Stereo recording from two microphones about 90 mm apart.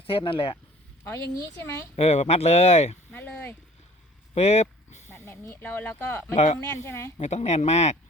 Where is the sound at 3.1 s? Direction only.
15° left (ahead or behind).